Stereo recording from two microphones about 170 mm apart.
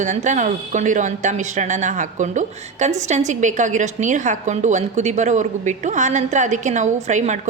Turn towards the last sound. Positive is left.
turn(degrees=-45)  # may be behind; listen again after turning